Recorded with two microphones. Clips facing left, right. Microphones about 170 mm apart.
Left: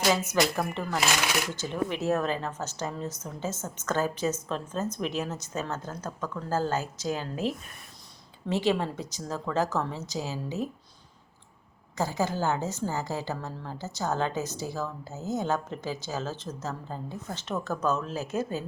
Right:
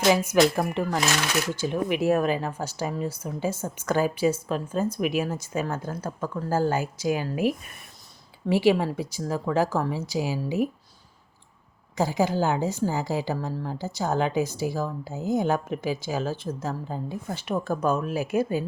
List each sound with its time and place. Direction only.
0.1 s a woman's voice: 10° right (ahead or behind)
11.9 s a woman's voice: 15° right (ahead or behind)